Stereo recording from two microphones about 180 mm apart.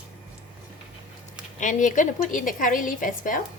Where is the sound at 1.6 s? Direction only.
45° left (ahead or behind).